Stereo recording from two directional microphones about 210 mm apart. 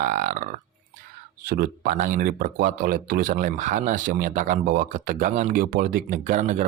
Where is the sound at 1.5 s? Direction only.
45° right (ahead or behind).